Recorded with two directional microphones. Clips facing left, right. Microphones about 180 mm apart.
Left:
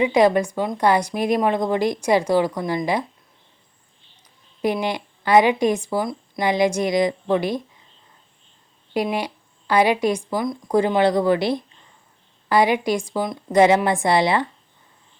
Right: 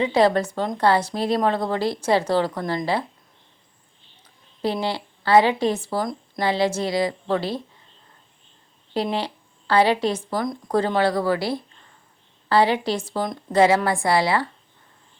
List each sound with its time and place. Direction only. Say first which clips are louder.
0.0 s speech: left 2 dB; 15° left (ahead or behind)
4.6 s speech: left 2 dB; 15° left (ahead or behind)
8.9 s a woman's voice: left 2 dB; 10° left (ahead or behind)
13.5 s speech: left 2 dB; 20° left (ahead or behind)